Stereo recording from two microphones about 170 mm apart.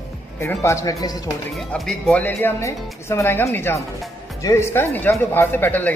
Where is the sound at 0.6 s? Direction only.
15° left (ahead or behind).